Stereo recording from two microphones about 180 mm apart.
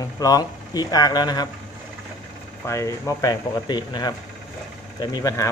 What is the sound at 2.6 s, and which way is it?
Speech, 15° left (ahead or behind).